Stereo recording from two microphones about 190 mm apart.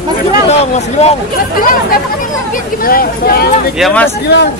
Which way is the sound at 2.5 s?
50° left (ahead or behind).